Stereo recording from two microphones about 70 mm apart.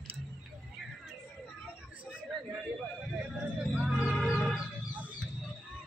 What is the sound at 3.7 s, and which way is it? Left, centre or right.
Music, centre.